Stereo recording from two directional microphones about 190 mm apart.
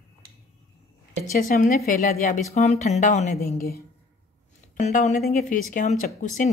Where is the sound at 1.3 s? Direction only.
50° left (ahead or behind).